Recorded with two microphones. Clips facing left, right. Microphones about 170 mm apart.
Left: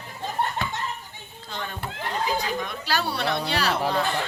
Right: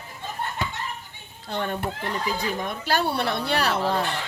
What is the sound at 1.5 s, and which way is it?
A woman's voice, 60° right (ahead or behind).